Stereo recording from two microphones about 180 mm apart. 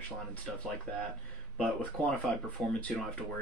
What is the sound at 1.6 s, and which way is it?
Speech, 10° left (ahead or behind).